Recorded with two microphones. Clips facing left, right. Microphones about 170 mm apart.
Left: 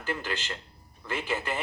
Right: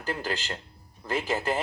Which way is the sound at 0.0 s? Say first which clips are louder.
Right 2 dB; 40° right (ahead or behind).